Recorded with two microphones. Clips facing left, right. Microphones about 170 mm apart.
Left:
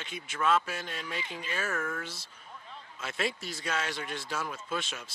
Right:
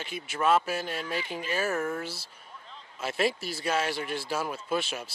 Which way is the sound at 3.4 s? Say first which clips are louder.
Right 5 dB; 10° right (ahead or behind).